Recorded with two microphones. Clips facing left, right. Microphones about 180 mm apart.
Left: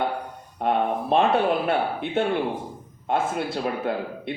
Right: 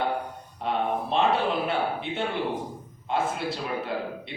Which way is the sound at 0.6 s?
50° left (ahead or behind).